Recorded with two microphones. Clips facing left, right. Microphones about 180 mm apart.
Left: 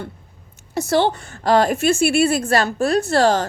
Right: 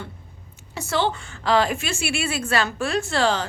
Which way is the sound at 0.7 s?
40° left (ahead or behind).